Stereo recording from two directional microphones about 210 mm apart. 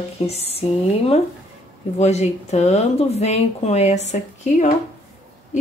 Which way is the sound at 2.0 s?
30° left (ahead or behind).